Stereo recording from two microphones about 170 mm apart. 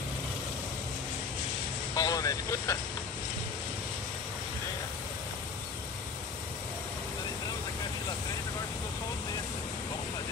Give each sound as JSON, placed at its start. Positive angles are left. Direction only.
{"t": 2.0, "sound": "vehicle", "side_deg": 20}